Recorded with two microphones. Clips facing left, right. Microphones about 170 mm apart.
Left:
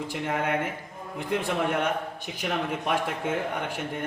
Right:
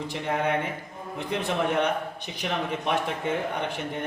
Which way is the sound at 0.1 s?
5° left (ahead or behind).